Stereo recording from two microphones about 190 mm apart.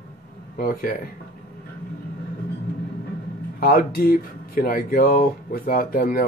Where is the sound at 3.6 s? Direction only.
50° left (ahead or behind).